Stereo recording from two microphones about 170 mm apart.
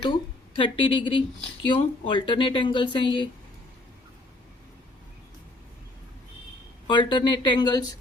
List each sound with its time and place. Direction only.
0.5 s speech: 30° left (ahead or behind)
6.8 s speech: 30° left (ahead or behind)